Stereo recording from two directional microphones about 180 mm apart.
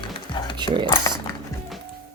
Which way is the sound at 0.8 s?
25° left (ahead or behind).